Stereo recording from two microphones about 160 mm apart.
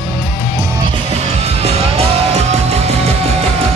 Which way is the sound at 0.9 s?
40° right (ahead or behind).